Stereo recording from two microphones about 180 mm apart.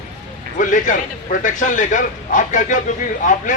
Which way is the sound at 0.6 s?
45° left (ahead or behind).